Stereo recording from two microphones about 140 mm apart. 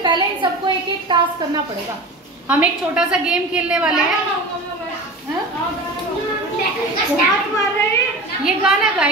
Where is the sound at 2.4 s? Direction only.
10° right (ahead or behind).